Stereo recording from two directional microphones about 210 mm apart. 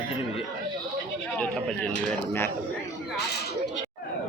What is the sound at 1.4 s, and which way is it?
Speech, 5° left (ahead or behind).